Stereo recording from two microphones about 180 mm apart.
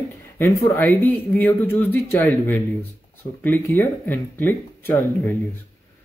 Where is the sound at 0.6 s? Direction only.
10° left (ahead or behind).